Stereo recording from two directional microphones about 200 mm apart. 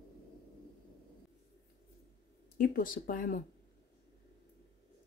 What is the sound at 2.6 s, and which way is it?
Speech, 45° left (ahead or behind).